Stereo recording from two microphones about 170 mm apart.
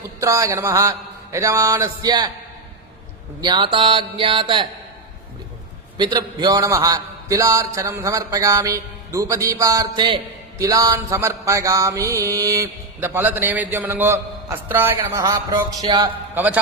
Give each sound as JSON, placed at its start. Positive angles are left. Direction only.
{"t": 0.2, "sound": "a man's voice", "side_deg": -20}
{"t": 3.4, "sound": "a man's voice", "side_deg": -25}
{"t": 6.0, "sound": "a man's voice", "side_deg": -25}
{"t": 10.6, "sound": "mantra", "side_deg": -20}
{"t": 15.8, "sound": "a man's voice", "side_deg": -20}
{"t": 16.3, "sound": "a man's voice", "side_deg": -10}